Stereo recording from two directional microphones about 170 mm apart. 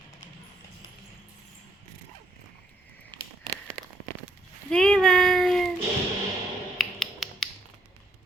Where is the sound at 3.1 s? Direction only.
25° right (ahead or behind).